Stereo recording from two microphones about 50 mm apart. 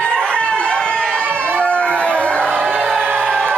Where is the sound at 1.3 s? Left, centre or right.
Right.